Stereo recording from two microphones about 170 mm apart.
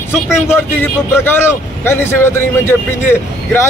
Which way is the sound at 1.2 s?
15° left (ahead or behind).